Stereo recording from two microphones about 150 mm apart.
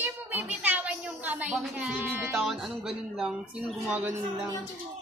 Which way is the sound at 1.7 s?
10° right (ahead or behind).